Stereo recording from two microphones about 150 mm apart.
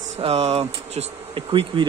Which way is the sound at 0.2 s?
45° right (ahead or behind).